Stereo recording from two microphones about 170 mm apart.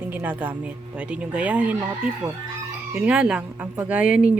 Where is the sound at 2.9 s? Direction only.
5° right (ahead or behind).